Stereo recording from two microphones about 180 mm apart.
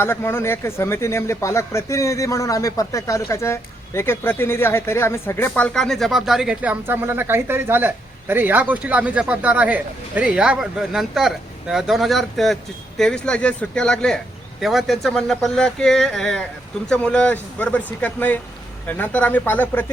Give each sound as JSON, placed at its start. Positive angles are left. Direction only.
{"t": 0.0, "sound": "speech", "side_deg": 15}